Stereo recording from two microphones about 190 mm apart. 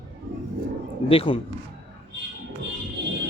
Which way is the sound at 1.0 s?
30° left (ahead or behind).